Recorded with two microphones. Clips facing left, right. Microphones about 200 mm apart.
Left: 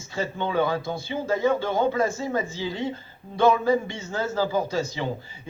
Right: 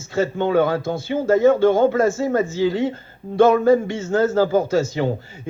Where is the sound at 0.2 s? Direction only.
50° right (ahead or behind).